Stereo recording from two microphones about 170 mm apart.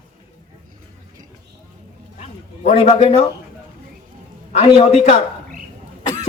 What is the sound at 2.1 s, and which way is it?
Speech, 40° left (ahead or behind).